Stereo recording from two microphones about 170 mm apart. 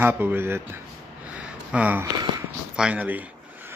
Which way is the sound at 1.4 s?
10° right (ahead or behind).